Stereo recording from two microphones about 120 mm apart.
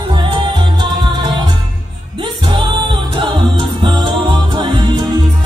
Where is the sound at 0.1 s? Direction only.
45° right (ahead or behind).